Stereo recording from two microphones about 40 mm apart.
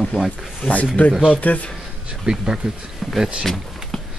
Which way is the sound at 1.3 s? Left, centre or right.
Left.